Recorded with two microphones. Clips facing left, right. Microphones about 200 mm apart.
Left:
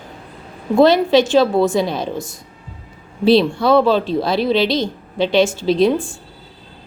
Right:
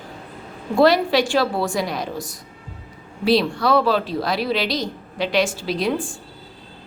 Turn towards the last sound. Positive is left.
turn(degrees=25)  # may be behind; listen again after turning